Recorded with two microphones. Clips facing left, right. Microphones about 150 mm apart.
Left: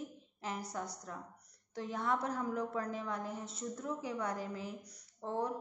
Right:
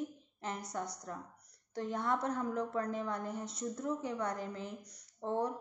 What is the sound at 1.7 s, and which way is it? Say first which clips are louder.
A woman's voice: right 1 dB; centre (ahead or behind).